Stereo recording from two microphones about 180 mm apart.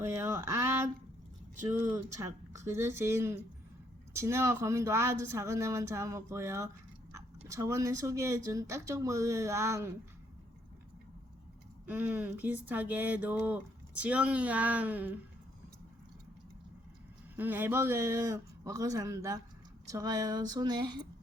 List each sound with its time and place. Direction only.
0.0 s speech: 15° right (ahead or behind)
11.9 s speech: 10° right (ahead or behind)
17.3 s speech: 10° right (ahead or behind)